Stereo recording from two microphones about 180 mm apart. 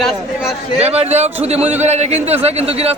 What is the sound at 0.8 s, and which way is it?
A man's voice, 35° right (ahead or behind).